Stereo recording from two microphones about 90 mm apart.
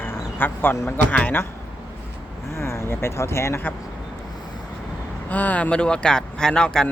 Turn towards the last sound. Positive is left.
turn(degrees=10)  # may be behind; listen again after turning